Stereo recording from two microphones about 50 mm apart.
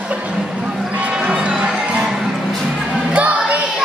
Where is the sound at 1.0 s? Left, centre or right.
Right.